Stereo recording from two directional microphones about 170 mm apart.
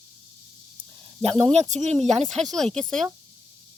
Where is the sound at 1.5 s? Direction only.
40° right (ahead or behind).